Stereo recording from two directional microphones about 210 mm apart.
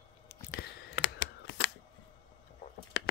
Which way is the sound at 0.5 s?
60° left (ahead or behind).